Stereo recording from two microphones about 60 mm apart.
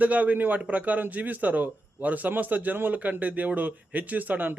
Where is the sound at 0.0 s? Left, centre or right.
Right.